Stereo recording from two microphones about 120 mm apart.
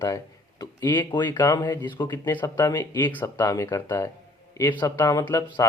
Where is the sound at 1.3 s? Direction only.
30° left (ahead or behind).